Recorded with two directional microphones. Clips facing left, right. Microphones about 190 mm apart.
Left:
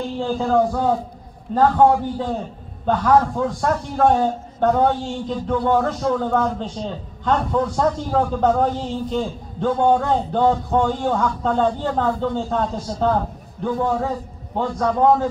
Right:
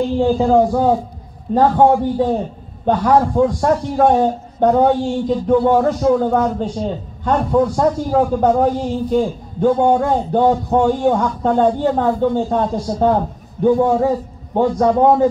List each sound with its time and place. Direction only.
0.2 s a man's voice: 15° right (ahead or behind)